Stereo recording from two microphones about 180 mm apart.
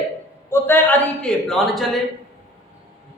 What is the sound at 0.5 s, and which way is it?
A man's voice, 10° left (ahead or behind).